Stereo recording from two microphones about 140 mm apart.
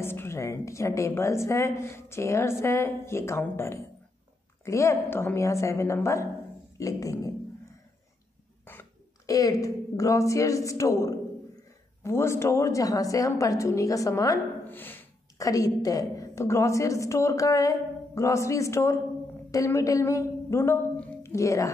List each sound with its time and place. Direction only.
0.0 s a woman's voice: 15° left (ahead or behind)
6.8 s a sound: 25° left (ahead or behind)
8.6 s a woman's voice: 20° left (ahead or behind)